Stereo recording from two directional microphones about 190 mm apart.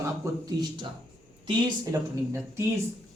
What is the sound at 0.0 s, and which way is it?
A man's voice, 20° right (ahead or behind).